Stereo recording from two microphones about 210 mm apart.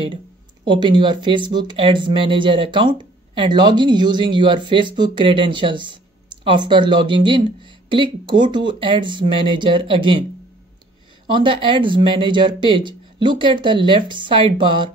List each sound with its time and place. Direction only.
0.7 s speech: 20° right (ahead or behind)
11.2 s speech: 25° right (ahead or behind)